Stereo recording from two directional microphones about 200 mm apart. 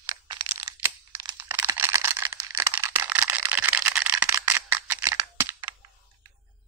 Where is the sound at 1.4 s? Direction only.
10° right (ahead or behind).